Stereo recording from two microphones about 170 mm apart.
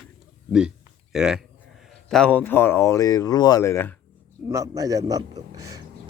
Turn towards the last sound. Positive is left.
turn(degrees=-20)  # may be behind; listen again after turning